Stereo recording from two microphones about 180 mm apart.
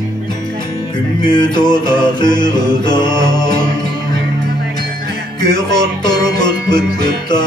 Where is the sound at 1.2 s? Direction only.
25° left (ahead or behind).